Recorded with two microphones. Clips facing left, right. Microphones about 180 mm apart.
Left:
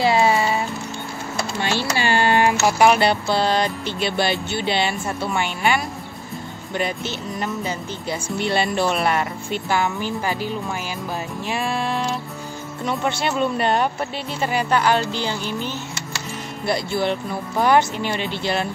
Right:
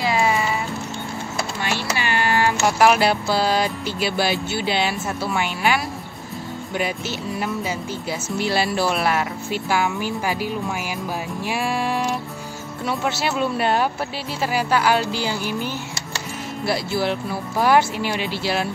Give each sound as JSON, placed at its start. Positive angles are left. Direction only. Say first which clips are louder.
{"t": 0.0, "sound": "music", "louder": "left 3 dB", "side_deg": 30}
{"t": 1.6, "sound": "a sound", "louder": "left 4 dB", "side_deg": 30}
{"t": 2.0, "sound": "music", "louder": "left 4 dB", "side_deg": 30}
{"t": 2.6, "sound": "speech", "louder": "right 2 dB", "side_deg": 0}